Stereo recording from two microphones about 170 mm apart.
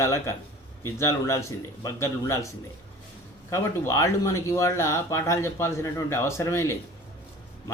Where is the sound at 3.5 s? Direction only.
15° left (ahead or behind).